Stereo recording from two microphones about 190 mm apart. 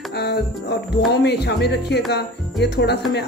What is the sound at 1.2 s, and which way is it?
Music, 65° left (ahead or behind).